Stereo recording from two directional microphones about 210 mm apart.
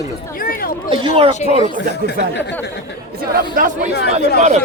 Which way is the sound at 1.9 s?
50° left (ahead or behind).